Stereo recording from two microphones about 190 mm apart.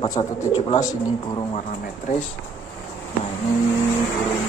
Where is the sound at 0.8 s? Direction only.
20° left (ahead or behind).